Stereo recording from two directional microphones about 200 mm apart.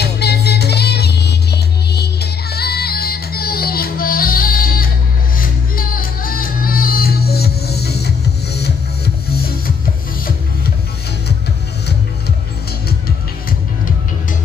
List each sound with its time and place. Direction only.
0.0 s music: 55° left (ahead or behind)